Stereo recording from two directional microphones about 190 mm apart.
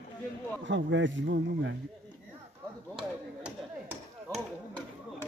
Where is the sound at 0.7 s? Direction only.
75° right (ahead or behind).